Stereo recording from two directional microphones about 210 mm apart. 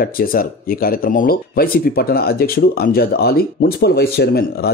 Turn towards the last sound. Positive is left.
turn(degrees=50)  # may be behind; listen again after turning